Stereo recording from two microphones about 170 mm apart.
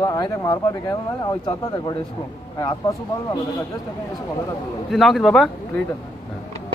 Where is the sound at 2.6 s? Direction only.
20° left (ahead or behind).